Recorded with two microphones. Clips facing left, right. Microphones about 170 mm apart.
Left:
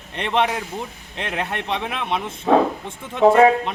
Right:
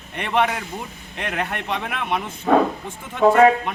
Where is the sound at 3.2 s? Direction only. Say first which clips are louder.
Left 1 dB; centre (ahead or behind).